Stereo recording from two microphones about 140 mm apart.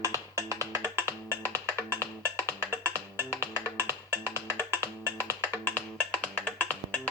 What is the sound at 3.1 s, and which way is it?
Music, 15° right (ahead or behind).